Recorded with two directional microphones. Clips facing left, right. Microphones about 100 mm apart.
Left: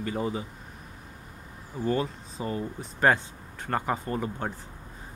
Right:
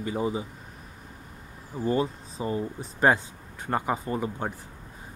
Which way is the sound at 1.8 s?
25° right (ahead or behind).